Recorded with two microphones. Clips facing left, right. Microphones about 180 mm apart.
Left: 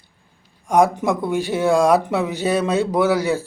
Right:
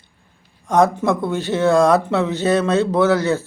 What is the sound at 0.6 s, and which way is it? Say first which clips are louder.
Speech: right 1 dB; 10° left (ahead or behind).